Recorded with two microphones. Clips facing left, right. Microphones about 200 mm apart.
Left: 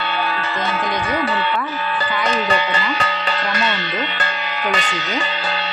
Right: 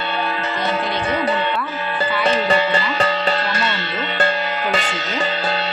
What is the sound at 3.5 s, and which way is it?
Speech, 30° right (ahead or behind).